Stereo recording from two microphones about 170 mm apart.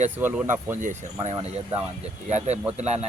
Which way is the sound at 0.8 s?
45° right (ahead or behind).